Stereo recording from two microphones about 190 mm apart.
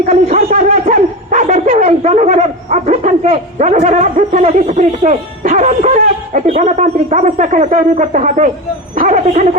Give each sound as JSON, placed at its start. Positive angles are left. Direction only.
{"t": 0.1, "sound": "speech", "side_deg": -40}